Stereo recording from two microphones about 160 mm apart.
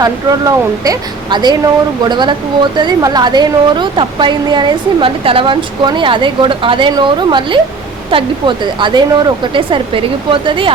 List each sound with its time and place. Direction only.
0.0 s a woman's voice: 25° right (ahead or behind)